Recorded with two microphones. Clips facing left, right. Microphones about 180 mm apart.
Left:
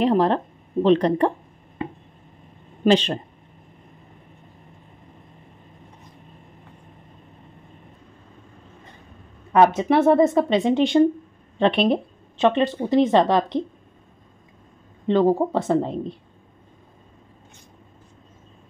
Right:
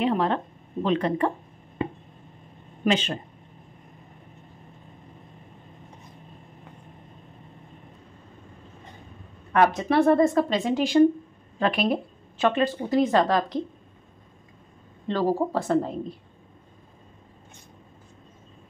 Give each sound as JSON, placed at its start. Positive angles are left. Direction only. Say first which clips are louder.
{"t": 0.0, "sound": "speech", "louder": "left 5 dB", "side_deg": 35}
{"t": 2.8, "sound": "speech", "louder": "left 6 dB", "side_deg": 35}
{"t": 9.5, "sound": "speech", "louder": "left 4 dB", "side_deg": 25}
{"t": 15.0, "sound": "speech", "louder": "left 6 dB", "side_deg": 20}